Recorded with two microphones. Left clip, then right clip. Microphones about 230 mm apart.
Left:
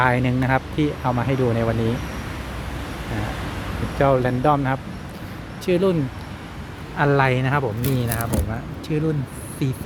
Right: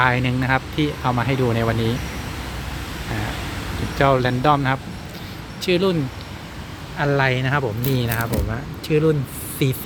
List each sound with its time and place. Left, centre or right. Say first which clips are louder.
0.0 s speech: right 1 dB; centre
3.9 s speech: right 1 dB; centre
7.0 s speech: left 1 dB; centre
7.9 s speech: right 2 dB; centre